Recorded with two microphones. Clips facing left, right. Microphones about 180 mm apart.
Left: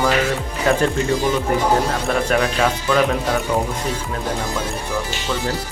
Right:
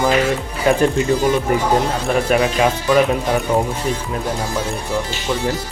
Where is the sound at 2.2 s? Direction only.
10° right (ahead or behind).